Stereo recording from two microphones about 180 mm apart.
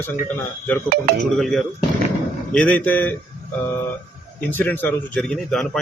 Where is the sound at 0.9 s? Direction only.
60° right (ahead or behind).